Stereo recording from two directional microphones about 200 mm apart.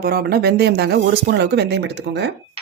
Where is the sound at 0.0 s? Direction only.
50° right (ahead or behind).